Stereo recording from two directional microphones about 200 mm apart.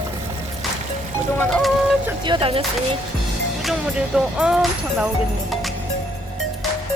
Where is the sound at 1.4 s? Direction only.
5° left (ahead or behind).